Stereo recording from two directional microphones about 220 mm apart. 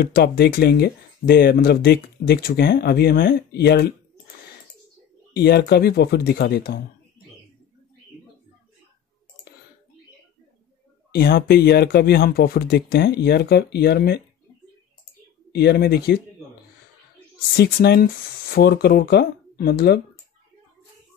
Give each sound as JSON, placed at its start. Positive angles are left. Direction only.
{"t": 0.0, "sound": "speech", "side_deg": 45}
{"t": 5.3, "sound": "speech", "side_deg": 45}
{"t": 11.1, "sound": "speech", "side_deg": 45}
{"t": 15.5, "sound": "speech", "side_deg": 45}
{"t": 17.6, "sound": "speech", "side_deg": 45}